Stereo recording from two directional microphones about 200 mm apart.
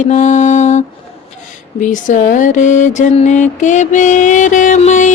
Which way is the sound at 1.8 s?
40° left (ahead or behind).